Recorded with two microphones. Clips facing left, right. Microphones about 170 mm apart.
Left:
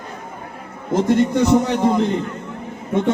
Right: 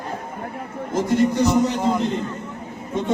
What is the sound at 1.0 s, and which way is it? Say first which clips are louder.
Speech: left 2 dB; 60° left (ahead or behind).